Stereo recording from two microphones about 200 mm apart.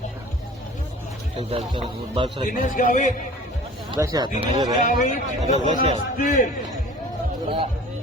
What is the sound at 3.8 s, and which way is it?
Speech, 15° right (ahead or behind).